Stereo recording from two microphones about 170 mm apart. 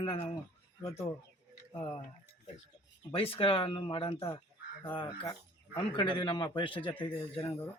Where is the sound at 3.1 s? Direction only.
35° left (ahead or behind).